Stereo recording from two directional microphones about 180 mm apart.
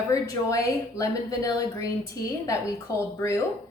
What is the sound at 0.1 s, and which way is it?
A woman's voice, 20° left (ahead or behind).